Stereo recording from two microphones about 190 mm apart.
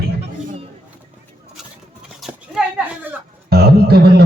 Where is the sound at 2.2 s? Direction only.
Centre (ahead or behind).